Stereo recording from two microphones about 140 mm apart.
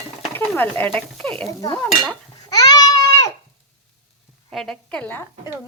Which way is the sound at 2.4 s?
30° left (ahead or behind).